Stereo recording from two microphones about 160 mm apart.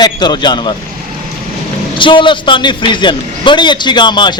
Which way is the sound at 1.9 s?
30° left (ahead or behind).